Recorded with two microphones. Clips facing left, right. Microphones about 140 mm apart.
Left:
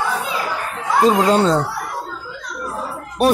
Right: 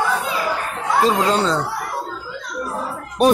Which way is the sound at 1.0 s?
15° left (ahead or behind).